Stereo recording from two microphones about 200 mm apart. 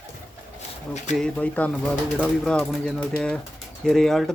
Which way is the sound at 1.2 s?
5° left (ahead or behind).